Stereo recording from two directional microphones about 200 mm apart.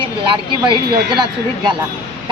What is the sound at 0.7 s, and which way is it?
Speech, 25° right (ahead or behind).